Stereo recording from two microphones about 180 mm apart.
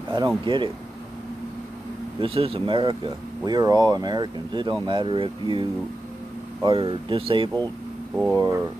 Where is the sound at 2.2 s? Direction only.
30° right (ahead or behind).